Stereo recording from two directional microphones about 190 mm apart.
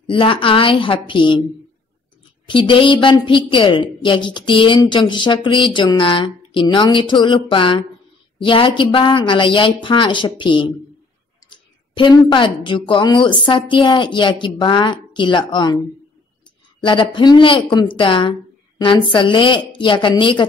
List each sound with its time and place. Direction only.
0.0 s a woman's voice: 25° left (ahead or behind)
2.4 s a woman's voice: 25° left (ahead or behind)
16.8 s a woman's voice: 25° left (ahead or behind)